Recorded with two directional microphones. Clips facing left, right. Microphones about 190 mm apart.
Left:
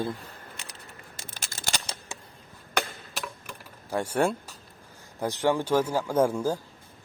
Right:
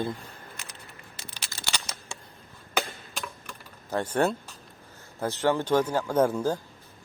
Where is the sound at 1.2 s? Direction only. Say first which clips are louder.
Left 1 dB; 50° left (ahead or behind).